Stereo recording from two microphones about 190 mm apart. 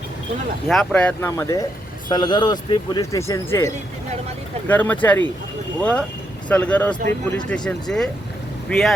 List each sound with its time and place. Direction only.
0.7 s speech: centre (ahead or behind)
4.7 s speech: 10° left (ahead or behind)